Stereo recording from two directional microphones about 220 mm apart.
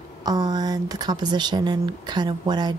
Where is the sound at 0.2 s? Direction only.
20° right (ahead or behind).